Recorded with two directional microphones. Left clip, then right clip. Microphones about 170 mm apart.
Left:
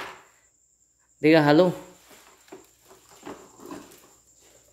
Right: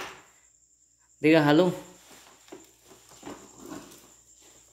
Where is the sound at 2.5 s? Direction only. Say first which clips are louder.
Left 1 dB; 10° right (ahead or behind).